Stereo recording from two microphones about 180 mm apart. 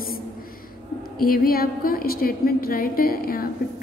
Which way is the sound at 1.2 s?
55° left (ahead or behind).